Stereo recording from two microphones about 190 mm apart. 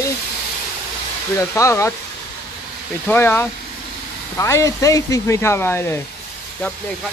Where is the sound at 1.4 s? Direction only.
15° left (ahead or behind).